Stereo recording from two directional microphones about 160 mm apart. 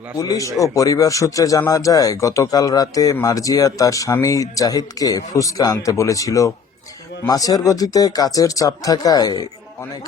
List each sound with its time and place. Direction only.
0.2 s speech: 20° left (ahead or behind)